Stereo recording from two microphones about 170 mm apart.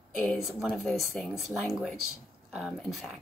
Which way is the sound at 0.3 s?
Centre (ahead or behind).